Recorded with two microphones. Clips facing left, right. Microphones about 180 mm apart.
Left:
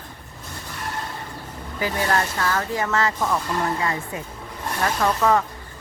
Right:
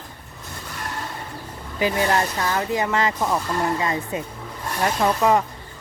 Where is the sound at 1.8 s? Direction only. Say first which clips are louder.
Right 2 dB; 20° right (ahead or behind).